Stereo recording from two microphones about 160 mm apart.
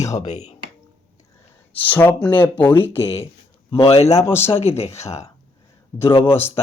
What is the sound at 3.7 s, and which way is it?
Speech, 35° left (ahead or behind).